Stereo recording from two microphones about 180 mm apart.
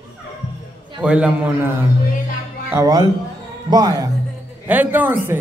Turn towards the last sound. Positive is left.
turn(degrees=-10)  # may be behind; listen again after turning